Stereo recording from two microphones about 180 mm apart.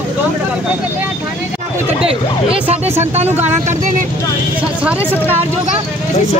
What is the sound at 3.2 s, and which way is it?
Speech, 10° right (ahead or behind).